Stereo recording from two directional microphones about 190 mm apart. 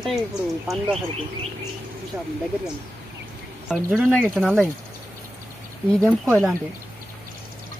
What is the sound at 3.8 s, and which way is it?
Speech, 5° right (ahead or behind).